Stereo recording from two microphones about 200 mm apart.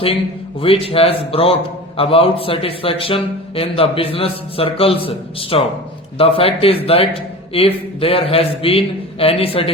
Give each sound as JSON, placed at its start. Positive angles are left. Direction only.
{"t": 0.6, "sound": "a man's voice", "side_deg": 30}